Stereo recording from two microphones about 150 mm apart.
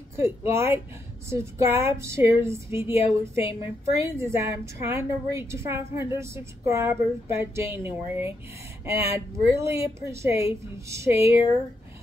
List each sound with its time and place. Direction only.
0.1 s a woman's voice: 15° right (ahead or behind)